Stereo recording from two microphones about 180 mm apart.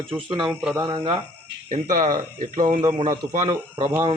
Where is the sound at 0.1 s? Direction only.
20° right (ahead or behind).